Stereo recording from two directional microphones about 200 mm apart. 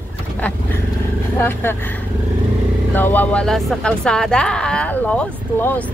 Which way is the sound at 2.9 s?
10° left (ahead or behind).